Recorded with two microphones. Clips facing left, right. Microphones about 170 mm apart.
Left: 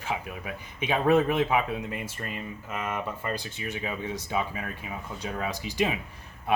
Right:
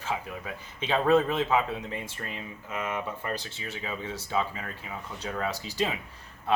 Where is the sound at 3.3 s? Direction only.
15° left (ahead or behind).